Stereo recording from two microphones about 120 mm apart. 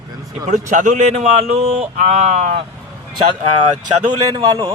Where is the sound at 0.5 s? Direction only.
90° right; by 2.6 s 70° right (ahead or behind).